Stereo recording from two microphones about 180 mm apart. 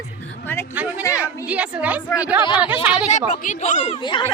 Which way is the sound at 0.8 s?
10° right (ahead or behind).